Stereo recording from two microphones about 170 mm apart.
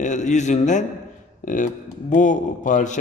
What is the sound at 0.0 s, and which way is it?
A man's voice, 45° left (ahead or behind).